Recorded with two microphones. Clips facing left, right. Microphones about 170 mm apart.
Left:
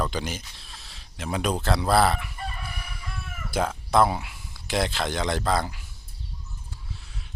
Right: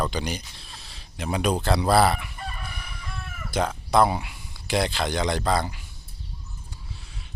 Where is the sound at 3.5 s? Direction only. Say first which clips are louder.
Right 1 dB; 5° left (ahead or behind).